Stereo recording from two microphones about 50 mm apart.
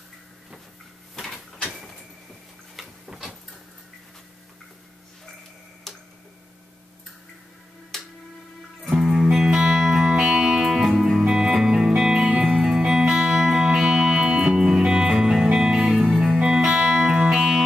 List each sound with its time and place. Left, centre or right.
2.7 s a sound: centre
7.9 s music: centre
9.0 s music: centre
12.5 s music: centre
17.4 s music: centre